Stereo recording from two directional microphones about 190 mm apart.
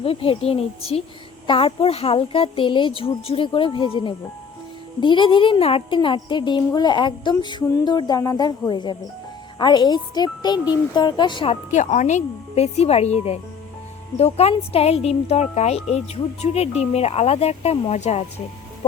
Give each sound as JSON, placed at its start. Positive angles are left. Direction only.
{"t": 0.0, "sound": "speech", "side_deg": 30}
{"t": 11.7, "sound": "speech", "side_deg": 40}